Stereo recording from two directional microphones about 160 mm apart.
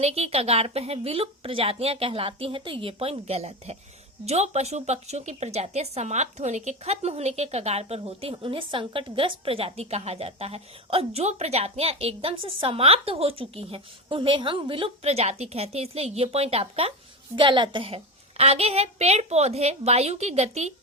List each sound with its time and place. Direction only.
0.0 s a woman's voice: 40° right (ahead or behind)